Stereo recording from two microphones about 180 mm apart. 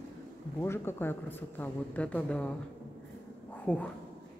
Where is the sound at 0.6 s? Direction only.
15° left (ahead or behind).